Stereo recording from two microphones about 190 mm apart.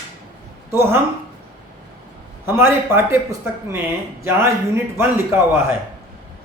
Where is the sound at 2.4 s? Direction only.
15° right (ahead or behind).